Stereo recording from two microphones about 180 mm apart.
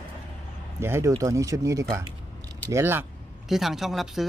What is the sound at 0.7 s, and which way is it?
Speech, 15° right (ahead or behind).